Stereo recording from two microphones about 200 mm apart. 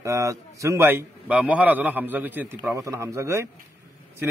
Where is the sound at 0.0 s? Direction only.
15° right (ahead or behind).